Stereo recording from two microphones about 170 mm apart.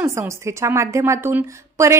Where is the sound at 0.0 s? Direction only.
15° right (ahead or behind).